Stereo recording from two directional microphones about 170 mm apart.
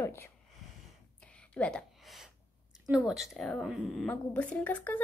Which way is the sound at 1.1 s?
5° left (ahead or behind).